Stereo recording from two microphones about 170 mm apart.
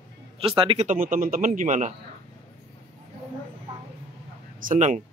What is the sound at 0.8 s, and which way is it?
Speech, 55° right (ahead or behind).